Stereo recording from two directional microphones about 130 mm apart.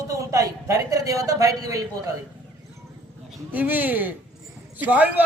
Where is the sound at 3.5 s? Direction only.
15° right (ahead or behind).